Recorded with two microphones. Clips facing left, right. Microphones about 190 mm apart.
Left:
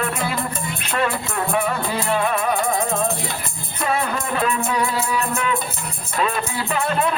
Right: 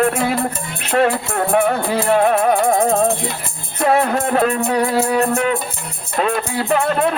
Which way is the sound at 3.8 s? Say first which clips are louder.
Right 7 dB; 55° right (ahead or behind).